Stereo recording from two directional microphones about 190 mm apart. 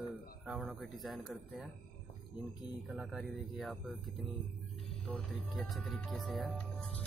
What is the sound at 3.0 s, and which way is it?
Music, centre (ahead or behind).